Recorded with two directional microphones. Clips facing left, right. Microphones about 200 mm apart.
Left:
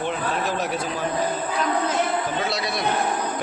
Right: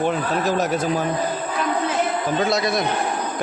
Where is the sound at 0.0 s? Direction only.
45° right (ahead or behind).